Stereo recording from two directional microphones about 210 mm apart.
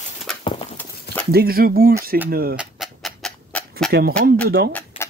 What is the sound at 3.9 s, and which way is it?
Speech, 45° right (ahead or behind).